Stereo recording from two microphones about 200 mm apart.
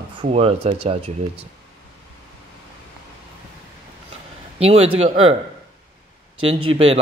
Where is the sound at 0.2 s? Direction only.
30° right (ahead or behind).